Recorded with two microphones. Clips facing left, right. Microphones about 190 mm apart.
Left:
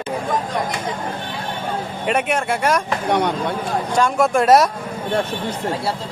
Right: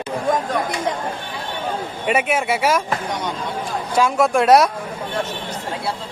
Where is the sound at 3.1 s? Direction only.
65° left (ahead or behind).